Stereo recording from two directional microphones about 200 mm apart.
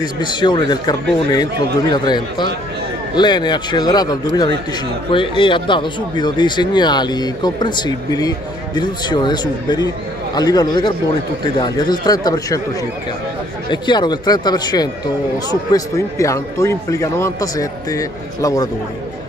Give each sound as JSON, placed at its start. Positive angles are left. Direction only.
{"t": 0.0, "sound": "speech", "side_deg": 20}
{"t": 13.7, "sound": "a man's voice", "side_deg": 20}